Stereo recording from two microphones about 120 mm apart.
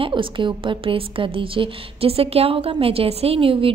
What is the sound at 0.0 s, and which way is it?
A woman's voice, 45° right (ahead or behind).